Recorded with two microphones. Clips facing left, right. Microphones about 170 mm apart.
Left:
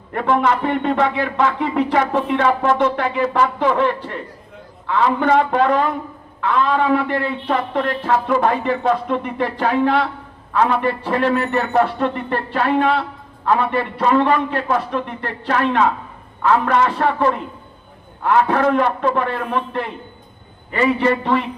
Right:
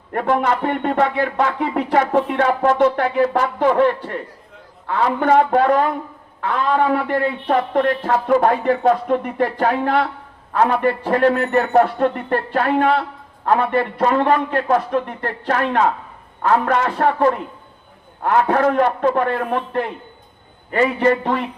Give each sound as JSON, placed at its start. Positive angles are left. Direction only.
{"t": 0.1, "sound": "a man's voice", "side_deg": -45}